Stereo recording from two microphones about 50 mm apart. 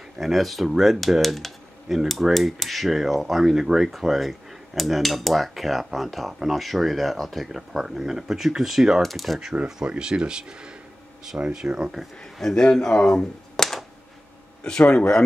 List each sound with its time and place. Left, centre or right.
0.2 s speech: centre
9.0 s speech: centre
9.7 s speech: centre
12.4 s speech: centre
14.6 s speech: centre